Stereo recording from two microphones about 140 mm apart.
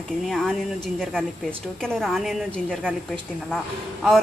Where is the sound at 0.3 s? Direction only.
Centre (ahead or behind).